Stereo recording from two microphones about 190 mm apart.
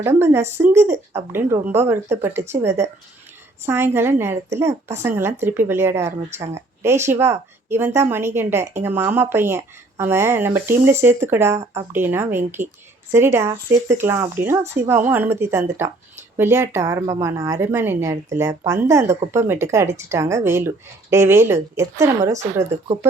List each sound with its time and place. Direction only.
0.0 s a woman's voice: 15° right (ahead or behind)